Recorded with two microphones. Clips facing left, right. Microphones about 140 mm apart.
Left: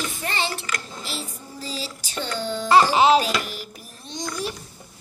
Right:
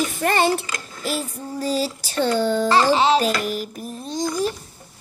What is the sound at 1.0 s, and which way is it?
Child singing, 50° right (ahead or behind).